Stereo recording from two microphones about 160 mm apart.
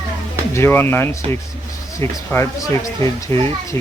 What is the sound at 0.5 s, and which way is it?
Speech, 15° left (ahead or behind).